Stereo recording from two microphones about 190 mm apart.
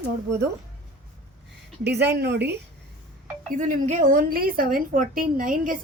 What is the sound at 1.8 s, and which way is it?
Speech, 60° right (ahead or behind).